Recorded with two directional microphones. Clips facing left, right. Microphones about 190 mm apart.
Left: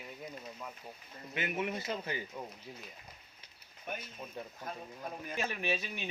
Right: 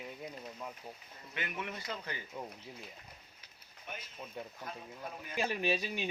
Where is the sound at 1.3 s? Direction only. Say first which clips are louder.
Left 5 dB; 20° left (ahead or behind).